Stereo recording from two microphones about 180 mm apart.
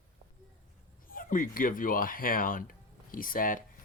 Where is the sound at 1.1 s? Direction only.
50° left (ahead or behind).